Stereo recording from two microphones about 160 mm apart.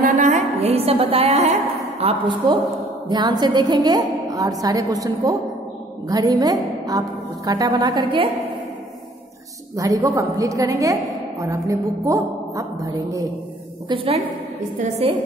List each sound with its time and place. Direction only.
0.0 s a sound: 50° right (ahead or behind)
2.0 s a woman's voice: 35° right (ahead or behind)
9.8 s a woman's voice: 20° right (ahead or behind)
13.8 s a woman's voice: 35° right (ahead or behind)